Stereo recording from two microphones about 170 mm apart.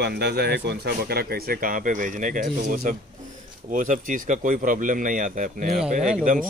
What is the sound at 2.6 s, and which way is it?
Speech, 60° right (ahead or behind).